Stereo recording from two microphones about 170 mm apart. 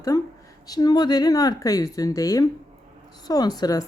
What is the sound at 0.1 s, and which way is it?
Speech, 20° left (ahead or behind).